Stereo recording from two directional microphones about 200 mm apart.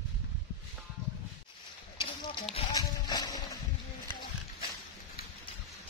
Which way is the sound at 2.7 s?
20° left (ahead or behind).